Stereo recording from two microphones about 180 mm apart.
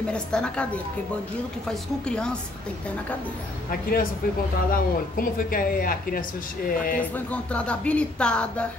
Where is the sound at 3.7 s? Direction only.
55° left (ahead or behind).